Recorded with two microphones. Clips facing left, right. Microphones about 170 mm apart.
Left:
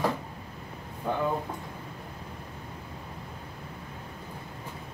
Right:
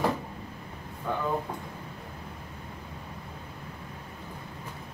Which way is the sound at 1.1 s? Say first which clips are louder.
Left 2 dB; 25° left (ahead or behind).